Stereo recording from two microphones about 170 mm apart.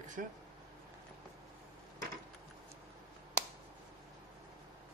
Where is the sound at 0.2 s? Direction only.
60° right (ahead or behind).